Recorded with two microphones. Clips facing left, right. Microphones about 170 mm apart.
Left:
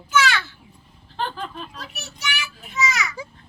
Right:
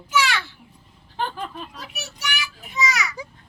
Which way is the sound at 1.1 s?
15° right (ahead or behind).